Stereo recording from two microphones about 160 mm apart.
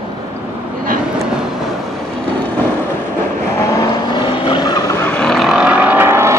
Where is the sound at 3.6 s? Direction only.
20° left (ahead or behind).